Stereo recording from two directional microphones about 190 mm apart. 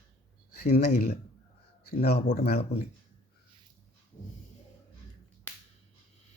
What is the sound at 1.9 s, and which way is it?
Speech, 55° left (ahead or behind).